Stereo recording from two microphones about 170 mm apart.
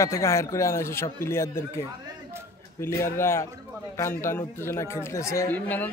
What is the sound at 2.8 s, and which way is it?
Speech, 15° left (ahead or behind).